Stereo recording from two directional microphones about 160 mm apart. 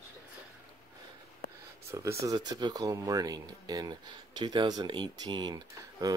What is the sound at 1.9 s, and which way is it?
Speech, 20° right (ahead or behind).